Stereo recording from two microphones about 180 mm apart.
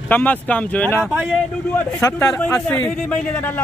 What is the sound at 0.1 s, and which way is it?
Speech, 10° left (ahead or behind).